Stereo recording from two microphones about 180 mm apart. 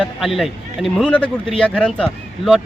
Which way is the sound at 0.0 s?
Centre (ahead or behind).